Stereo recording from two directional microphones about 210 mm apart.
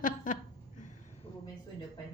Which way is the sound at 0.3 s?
35° left (ahead or behind).